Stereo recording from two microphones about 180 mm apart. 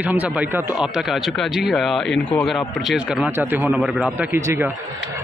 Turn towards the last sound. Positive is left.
turn(degrees=-15)  # may be behind; listen again after turning